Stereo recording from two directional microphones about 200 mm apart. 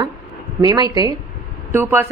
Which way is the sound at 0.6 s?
20° right (ahead or behind).